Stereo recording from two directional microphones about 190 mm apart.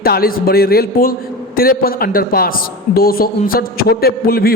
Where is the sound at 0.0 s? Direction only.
50° left (ahead or behind).